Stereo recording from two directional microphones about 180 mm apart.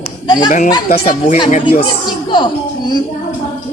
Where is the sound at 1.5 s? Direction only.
45° left (ahead or behind).